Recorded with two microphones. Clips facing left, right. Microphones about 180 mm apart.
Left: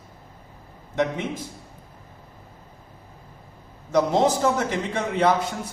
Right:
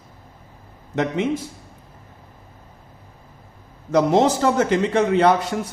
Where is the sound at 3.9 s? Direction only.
75° right (ahead or behind).